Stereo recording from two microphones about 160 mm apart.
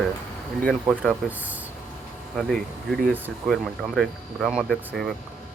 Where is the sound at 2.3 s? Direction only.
5° left (ahead or behind).